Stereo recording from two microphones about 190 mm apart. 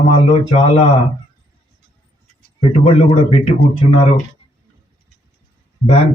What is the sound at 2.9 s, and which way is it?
Speech, 30° left (ahead or behind).